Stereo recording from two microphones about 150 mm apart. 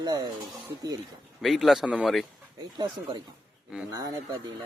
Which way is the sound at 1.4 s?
Centre (ahead or behind).